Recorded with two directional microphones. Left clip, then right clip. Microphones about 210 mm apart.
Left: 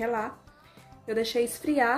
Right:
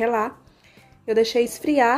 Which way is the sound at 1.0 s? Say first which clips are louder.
Right 8 dB; 30° right (ahead or behind).